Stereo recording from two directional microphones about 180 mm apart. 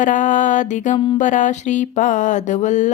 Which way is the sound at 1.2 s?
45° left (ahead or behind).